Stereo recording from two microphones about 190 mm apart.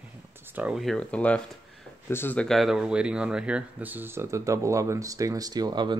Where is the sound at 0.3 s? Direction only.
10° right (ahead or behind).